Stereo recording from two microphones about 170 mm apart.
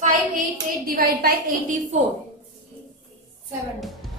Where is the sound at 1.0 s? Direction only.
65° right (ahead or behind).